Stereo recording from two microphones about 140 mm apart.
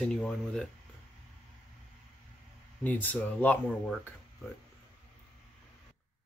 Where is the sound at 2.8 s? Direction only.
10° left (ahead or behind).